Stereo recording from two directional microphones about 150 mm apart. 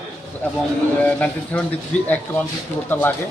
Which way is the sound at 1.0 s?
10° left (ahead or behind).